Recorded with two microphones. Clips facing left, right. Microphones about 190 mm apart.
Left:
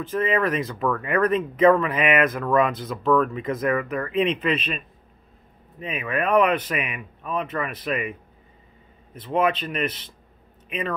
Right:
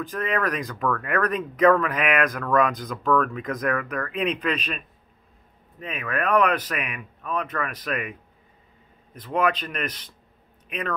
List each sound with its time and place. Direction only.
0.0 s speech: centre (ahead or behind)